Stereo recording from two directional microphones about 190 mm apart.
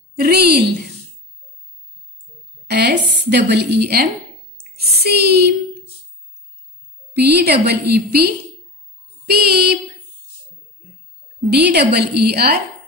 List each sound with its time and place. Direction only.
0.2 s a woman's voice: 55° right (ahead or behind)
2.7 s a woman's voice: 60° right (ahead or behind)
7.2 s a woman's voice: 60° right (ahead or behind)
11.5 s a woman's voice: 60° right (ahead or behind)